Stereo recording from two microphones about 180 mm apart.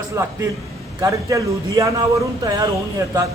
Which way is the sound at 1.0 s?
20° right (ahead or behind).